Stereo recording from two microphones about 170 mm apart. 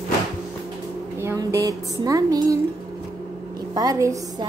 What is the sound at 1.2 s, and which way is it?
A woman's voice, 15° right (ahead or behind).